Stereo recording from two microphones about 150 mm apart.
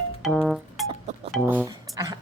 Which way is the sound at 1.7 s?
30° right (ahead or behind).